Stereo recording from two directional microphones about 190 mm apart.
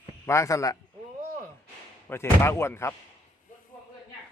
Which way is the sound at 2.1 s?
10° left (ahead or behind).